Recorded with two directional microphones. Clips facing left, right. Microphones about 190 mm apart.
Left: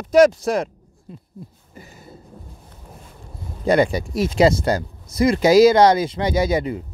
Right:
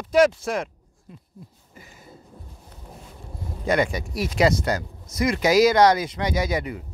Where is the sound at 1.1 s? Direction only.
30° left (ahead or behind).